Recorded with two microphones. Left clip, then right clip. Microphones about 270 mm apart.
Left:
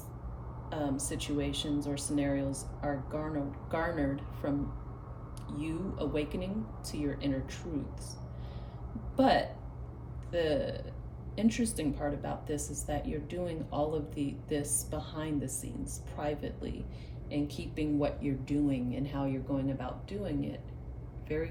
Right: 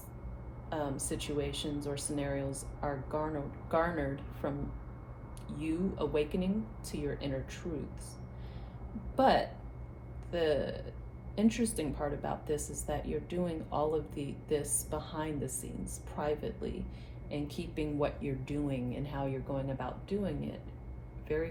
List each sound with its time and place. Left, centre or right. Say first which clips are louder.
0.7 s a woman's voice: left 1 dB; centre
9.1 s a woman's voice: even; centre